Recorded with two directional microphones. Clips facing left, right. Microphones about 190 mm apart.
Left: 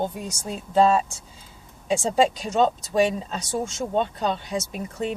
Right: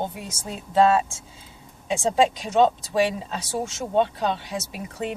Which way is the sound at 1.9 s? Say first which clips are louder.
Right 1 dB; centre (ahead or behind).